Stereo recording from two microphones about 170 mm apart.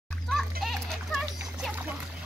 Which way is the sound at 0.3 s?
Centre (ahead or behind).